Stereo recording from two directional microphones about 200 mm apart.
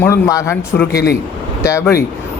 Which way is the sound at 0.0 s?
15° left (ahead or behind).